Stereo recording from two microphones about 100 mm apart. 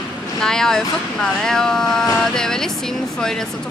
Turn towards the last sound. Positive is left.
turn(degrees=5)  # may be behind; listen again after turning